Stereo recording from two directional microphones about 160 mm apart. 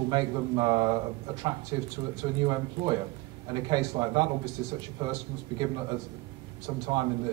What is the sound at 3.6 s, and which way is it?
A man's voice, 30° right (ahead or behind).